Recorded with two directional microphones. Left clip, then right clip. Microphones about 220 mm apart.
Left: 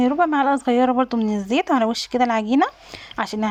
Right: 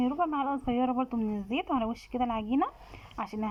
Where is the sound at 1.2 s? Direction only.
15° left (ahead or behind).